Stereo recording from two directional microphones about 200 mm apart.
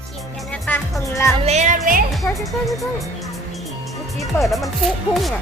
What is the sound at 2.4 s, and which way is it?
Speech, centre (ahead or behind).